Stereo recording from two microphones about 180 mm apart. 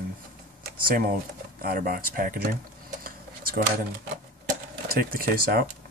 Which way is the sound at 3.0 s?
55° right (ahead or behind).